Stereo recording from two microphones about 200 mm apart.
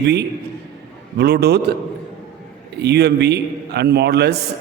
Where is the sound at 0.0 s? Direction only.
55° right (ahead or behind).